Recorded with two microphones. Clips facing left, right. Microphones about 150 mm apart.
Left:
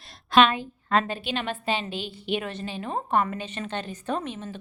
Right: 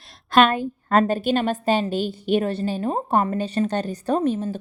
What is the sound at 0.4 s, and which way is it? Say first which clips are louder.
A woman's voice: right 4 dB; 45° right (ahead or behind).